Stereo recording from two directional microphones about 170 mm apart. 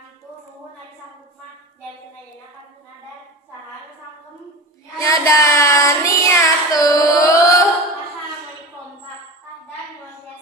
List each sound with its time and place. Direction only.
4.9 s child singing: 15° left (ahead or behind)